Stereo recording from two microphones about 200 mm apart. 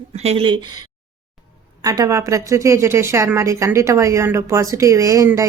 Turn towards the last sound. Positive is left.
turn(degrees=-15)  # may be behind; listen again after turning